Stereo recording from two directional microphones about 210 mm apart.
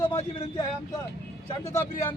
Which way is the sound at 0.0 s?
25° left (ahead or behind).